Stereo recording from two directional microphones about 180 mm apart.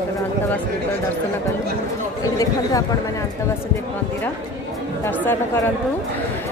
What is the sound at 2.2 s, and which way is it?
Speech, 20° left (ahead or behind).